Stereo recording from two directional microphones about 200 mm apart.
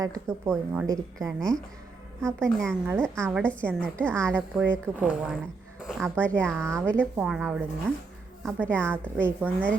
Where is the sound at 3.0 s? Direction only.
5° left (ahead or behind).